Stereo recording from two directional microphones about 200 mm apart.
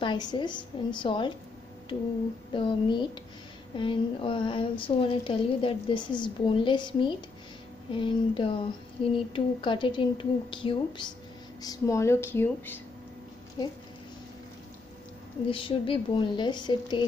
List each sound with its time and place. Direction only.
0.0 s a woman's voice: 20° left (ahead or behind)
2.5 s a woman's voice: 25° left (ahead or behind)
15.5 s a woman's voice: 25° left (ahead or behind)